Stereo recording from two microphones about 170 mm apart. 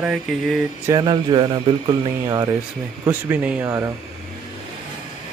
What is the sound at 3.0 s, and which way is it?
Speech, 10° right (ahead or behind).